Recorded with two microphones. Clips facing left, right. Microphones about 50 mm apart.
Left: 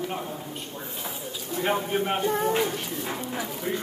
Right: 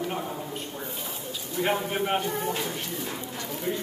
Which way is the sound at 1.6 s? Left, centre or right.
Centre.